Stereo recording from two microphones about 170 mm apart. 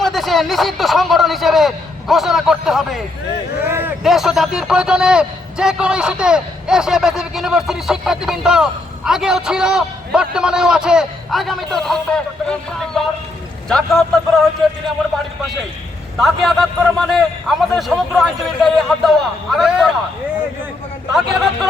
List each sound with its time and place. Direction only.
0.0 s a man's voice: centre (ahead or behind)
3.7 s a sound: 15° right (ahead or behind)
4.0 s a man's voice: centre (ahead or behind)
16.1 s a man's voice: centre (ahead or behind)
21.2 s a man's voice: centre (ahead or behind)